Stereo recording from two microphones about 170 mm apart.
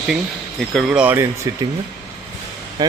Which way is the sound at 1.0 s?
15° right (ahead or behind).